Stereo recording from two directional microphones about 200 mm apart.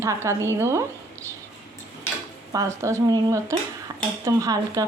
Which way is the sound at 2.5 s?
15° right (ahead or behind).